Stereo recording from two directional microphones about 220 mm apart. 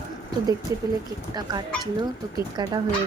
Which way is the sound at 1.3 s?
20° right (ahead or behind).